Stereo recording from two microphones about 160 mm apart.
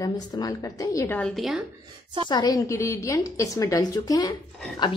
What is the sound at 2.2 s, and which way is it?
A woman's voice, 25° left (ahead or behind).